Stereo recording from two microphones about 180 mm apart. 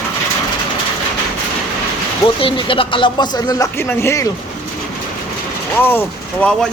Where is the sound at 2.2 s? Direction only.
30° left (ahead or behind).